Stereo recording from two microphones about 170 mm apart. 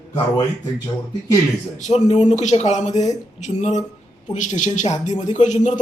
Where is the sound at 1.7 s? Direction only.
45° left (ahead or behind).